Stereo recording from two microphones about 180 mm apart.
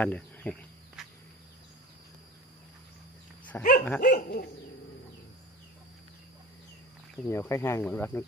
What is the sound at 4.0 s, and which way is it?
Dog, 60° left (ahead or behind).